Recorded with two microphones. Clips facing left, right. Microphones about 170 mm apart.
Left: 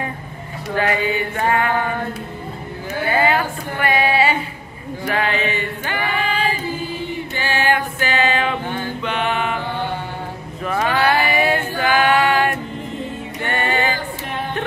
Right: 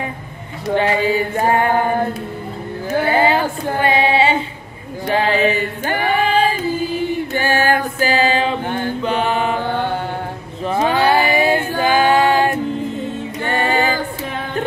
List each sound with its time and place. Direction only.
0.7 s mantra: 30° right (ahead or behind)
3.1 s female singing: 30° right (ahead or behind)
5.0 s mantra: 30° right (ahead or behind)
7.3 s music: 45° right (ahead or behind)
8.7 s mantra: 35° right (ahead or behind)
10.6 s a sound: 25° right (ahead or behind)
13.5 s music: 35° right (ahead or behind)